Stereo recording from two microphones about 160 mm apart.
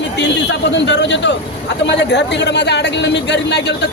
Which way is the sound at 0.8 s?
90° left.